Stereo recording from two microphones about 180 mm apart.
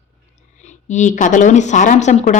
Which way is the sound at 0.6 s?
40° left (ahead or behind).